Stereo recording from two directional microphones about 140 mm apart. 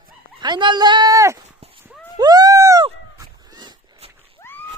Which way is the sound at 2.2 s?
25° right (ahead or behind).